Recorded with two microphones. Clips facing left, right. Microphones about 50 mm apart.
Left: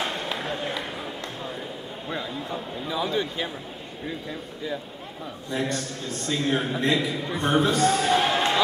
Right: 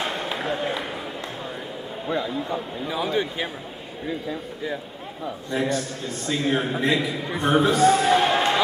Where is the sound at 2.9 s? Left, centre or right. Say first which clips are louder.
Right 2 dB; centre.